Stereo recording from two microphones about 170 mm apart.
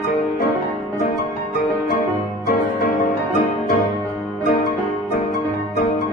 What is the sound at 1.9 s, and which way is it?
Music, 60° left (ahead or behind).